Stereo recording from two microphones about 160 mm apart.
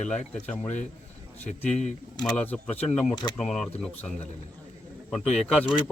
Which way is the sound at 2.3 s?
10° left (ahead or behind).